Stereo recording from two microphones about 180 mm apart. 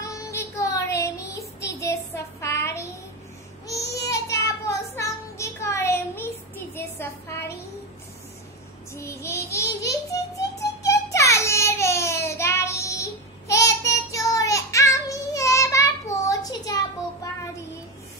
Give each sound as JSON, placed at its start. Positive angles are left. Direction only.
{"t": 0.0, "sound": "child singing", "side_deg": 15}
{"t": 4.0, "sound": "a sound", "side_deg": 15}
{"t": 7.0, "sound": "child singing", "side_deg": 15}
{"t": 8.9, "sound": "child singing", "side_deg": 15}